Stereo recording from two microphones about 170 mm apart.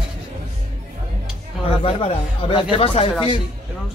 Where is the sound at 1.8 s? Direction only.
30° left (ahead or behind).